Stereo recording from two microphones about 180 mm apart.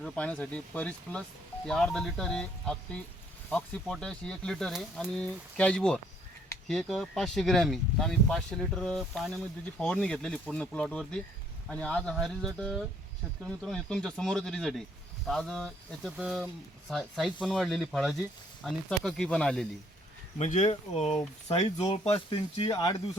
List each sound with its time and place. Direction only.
0.0 s speech: 5° left (ahead or behind)
20.4 s speech: 40° left (ahead or behind)
21.0 s speech: centre (ahead or behind)
21.4 s speech: 35° left (ahead or behind)
22.7 s speech: 20° left (ahead or behind)